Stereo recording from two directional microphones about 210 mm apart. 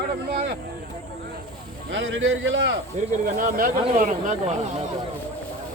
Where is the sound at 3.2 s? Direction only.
40° right (ahead or behind).